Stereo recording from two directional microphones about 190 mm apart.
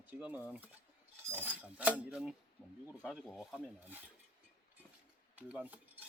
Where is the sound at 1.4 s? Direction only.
10° right (ahead or behind).